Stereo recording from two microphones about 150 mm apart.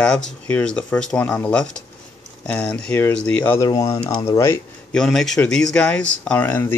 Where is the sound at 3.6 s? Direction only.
25° left (ahead or behind).